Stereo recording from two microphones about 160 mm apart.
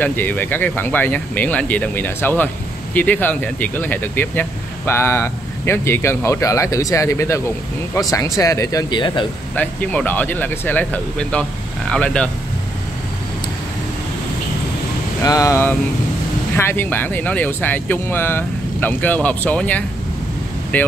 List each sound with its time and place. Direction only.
0.0 s speech: 10° left (ahead or behind); by 9.2 s 30° left (ahead or behind)
9.6 s speech: 10° left (ahead or behind)
15.2 s speech: 20° left (ahead or behind)